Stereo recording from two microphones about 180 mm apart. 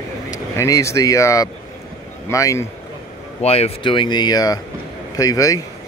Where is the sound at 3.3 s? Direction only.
35° left (ahead or behind).